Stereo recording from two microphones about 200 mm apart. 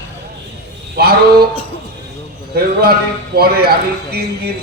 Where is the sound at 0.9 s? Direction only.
50° right (ahead or behind).